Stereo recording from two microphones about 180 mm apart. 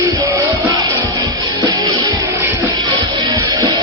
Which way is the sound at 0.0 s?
20° right (ahead or behind).